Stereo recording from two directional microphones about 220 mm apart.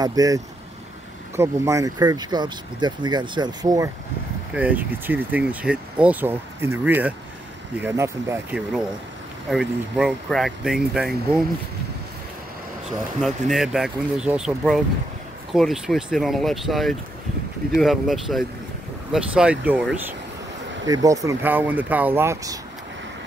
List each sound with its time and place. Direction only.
0.0 s speech: 15° right (ahead or behind)
13.2 s speech: centre (ahead or behind)
20.8 s speech: 15° right (ahead or behind)